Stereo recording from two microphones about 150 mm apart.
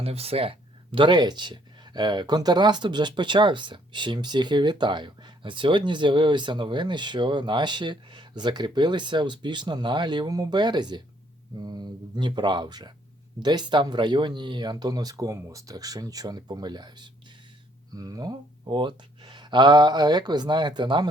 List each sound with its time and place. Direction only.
0.0 s speech: 40° right (ahead or behind)